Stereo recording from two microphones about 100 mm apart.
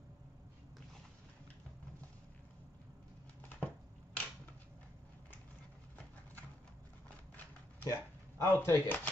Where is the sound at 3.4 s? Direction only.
15° left (ahead or behind).